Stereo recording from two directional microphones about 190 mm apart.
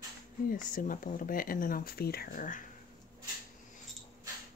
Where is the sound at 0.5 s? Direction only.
45° left (ahead or behind).